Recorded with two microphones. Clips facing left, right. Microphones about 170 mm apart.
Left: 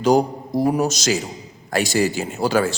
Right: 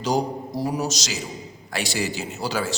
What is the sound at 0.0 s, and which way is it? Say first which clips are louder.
A man's voice: left 7 dB; 55° left (ahead or behind).